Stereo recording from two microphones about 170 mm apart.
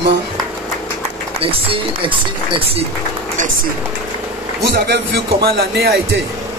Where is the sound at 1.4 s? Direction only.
30° right (ahead or behind).